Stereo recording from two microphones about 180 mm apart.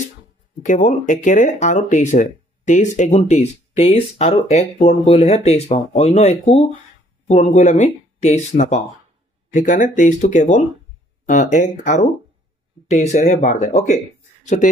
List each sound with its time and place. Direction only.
0.6 s speech: 45° left (ahead or behind)